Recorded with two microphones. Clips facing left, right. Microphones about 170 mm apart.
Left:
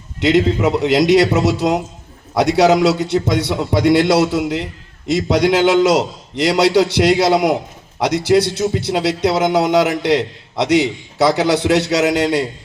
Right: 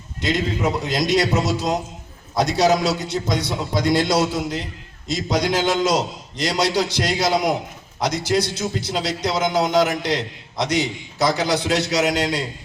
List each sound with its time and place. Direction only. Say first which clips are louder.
0.2 s a man's voice: left 8 dB; 70° left (ahead or behind)